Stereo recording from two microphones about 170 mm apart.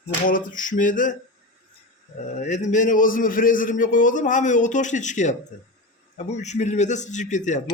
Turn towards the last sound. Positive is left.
turn(degrees=45)  # may be behind; listen again after turning